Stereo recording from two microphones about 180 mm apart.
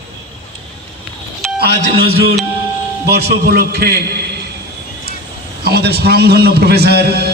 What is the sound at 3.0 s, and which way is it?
A man's voice, 60° right (ahead or behind).